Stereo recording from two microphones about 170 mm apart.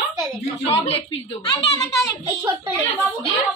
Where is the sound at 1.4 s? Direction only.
25° left (ahead or behind).